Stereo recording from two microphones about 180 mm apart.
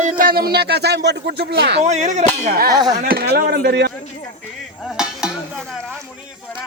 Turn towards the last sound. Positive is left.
turn(degrees=-5)  # may be behind; listen again after turning